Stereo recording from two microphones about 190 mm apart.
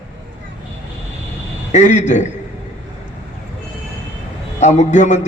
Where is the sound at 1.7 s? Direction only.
40° left (ahead or behind).